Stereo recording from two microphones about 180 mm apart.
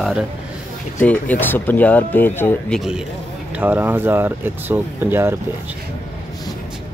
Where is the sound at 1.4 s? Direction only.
10° left (ahead or behind).